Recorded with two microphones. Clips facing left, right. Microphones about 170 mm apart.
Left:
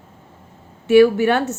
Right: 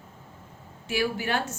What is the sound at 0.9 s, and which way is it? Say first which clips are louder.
Speech: left 15 dB; 60° left (ahead or behind).